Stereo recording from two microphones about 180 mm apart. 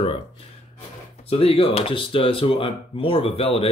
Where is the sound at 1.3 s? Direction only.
30° left (ahead or behind).